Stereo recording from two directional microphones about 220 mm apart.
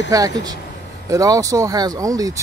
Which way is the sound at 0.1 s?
15° right (ahead or behind).